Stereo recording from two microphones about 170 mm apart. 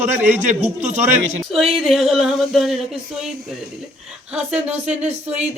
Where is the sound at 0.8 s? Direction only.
40° right (ahead or behind).